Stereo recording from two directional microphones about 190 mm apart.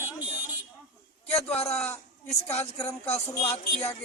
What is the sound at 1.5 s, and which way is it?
Speech, 35° left (ahead or behind).